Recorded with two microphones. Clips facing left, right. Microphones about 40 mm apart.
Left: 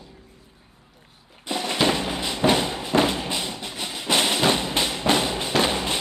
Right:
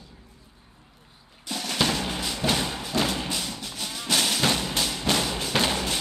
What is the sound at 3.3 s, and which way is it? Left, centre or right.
Music, left.